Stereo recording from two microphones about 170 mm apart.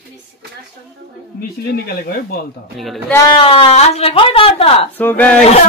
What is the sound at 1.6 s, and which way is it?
Speech, 65° left (ahead or behind).